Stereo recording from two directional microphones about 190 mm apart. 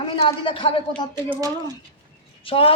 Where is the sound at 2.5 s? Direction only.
30° left (ahead or behind).